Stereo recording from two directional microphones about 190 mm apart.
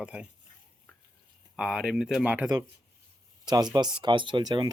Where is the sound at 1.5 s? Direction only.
Centre (ahead or behind).